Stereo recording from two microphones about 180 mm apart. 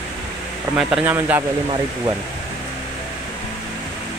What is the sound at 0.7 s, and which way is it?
Speech, 5° right (ahead or behind).